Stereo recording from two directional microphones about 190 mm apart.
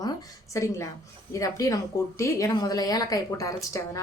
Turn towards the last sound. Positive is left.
turn(degrees=15)  # may be behind; listen again after turning